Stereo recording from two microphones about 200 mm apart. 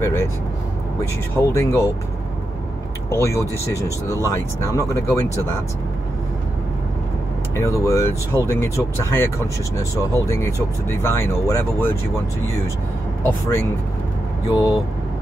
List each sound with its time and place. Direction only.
0.0 s speech: 15° left (ahead or behind)
1.3 s speech: 15° left (ahead or behind)
3.1 s speech: 15° left (ahead or behind)
7.5 s speech: 15° left (ahead or behind)
14.5 s speech: 15° left (ahead or behind)